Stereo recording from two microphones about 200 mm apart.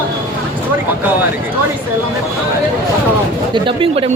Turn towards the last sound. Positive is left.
turn(degrees=-25)  # may be behind; listen again after turning